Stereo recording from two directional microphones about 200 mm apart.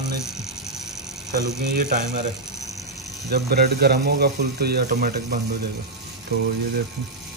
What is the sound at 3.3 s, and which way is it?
Speech, 55° right (ahead or behind).